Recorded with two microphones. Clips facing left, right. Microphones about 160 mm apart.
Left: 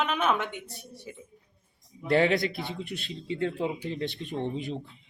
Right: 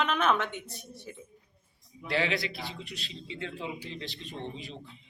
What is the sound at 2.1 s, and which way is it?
A man's voice, 50° left (ahead or behind).